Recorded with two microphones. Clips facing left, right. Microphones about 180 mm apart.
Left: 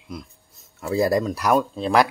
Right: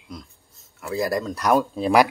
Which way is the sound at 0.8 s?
25° left (ahead or behind).